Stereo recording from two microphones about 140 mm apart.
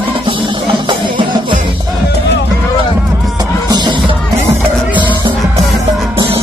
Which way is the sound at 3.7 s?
35° right (ahead or behind).